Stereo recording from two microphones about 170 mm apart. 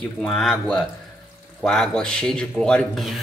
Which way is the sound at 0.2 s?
Centre (ahead or behind).